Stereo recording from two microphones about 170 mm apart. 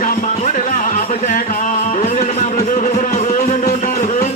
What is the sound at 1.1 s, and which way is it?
Music, 45° left (ahead or behind).